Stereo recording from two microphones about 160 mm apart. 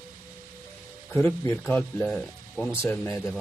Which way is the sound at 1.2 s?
15° left (ahead or behind).